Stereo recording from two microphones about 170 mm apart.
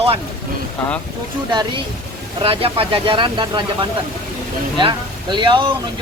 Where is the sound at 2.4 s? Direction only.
35° right (ahead or behind).